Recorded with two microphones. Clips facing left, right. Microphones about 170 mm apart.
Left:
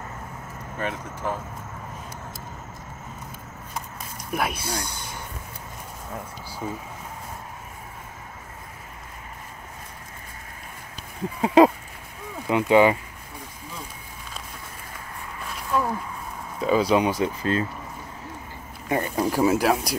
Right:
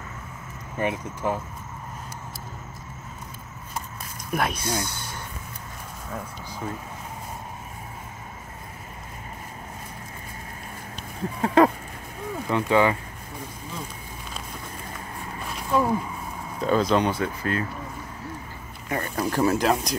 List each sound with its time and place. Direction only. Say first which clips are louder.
0.7 s speech: right 4 dB; 15° right (ahead or behind)
4.3 s speech: right 1 dB; 5° left (ahead or behind)
6.6 s speech: left 1 dB; 10° left (ahead or behind)
11.4 s speech: left 3 dB; 15° left (ahead or behind)
15.7 s speech: right 3 dB; 15° right (ahead or behind)
16.5 s speech: left 1 dB; 5° left (ahead or behind); by 17.6 s 25° left (ahead or behind)
18.9 s speech: left 3 dB; 15° left (ahead or behind)